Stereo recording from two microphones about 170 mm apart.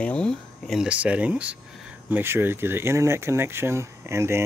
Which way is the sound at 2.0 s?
15° right (ahead or behind).